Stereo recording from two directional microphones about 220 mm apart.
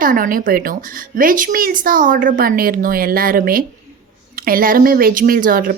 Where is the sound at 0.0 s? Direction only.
40° right (ahead or behind).